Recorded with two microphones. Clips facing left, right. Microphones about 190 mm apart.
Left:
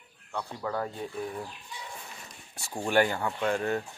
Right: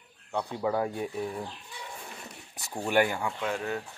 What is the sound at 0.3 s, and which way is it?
Speech, 20° right (ahead or behind).